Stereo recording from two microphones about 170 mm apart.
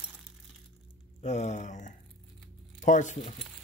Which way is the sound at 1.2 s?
40° left (ahead or behind).